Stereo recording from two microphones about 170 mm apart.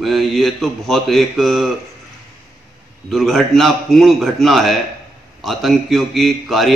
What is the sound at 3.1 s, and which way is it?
Speech, centre (ahead or behind).